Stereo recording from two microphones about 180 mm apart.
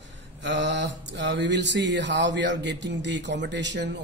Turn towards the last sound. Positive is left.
turn(degrees=-75)  # may be behind; listen again after turning